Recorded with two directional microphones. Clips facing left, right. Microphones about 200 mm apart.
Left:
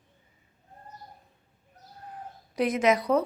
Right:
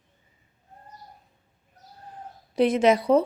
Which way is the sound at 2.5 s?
30° right (ahead or behind).